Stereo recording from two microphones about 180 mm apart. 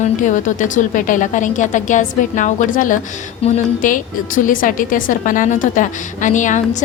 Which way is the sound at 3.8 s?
45° left (ahead or behind).